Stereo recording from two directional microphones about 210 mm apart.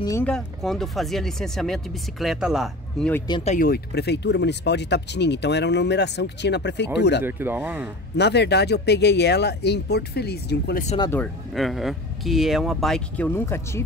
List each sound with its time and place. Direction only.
0.0 s speech: 15° left (ahead or behind)
0.3 s speech: centre (ahead or behind)
3.3 s speech: 20° left (ahead or behind)
3.5 s speech: 45° left (ahead or behind)
7.2 s speech: 10° right (ahead or behind)
8.2 s speech: 55° left (ahead or behind)
11.0 s speech: 10° left (ahead or behind)
11.5 s speech: centre (ahead or behind)